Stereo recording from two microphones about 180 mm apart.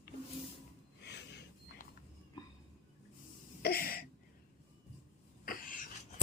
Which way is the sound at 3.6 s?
60° left (ahead or behind).